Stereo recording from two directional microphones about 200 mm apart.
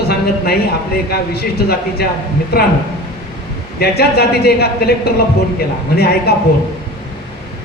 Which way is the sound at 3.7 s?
50° left (ahead or behind).